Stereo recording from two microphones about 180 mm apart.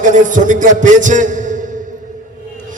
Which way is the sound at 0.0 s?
45° right (ahead or behind).